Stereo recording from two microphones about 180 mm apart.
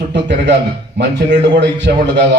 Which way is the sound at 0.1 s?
70° right (ahead or behind).